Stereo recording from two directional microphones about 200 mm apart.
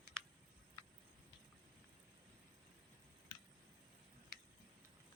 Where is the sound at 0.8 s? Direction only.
15° left (ahead or behind).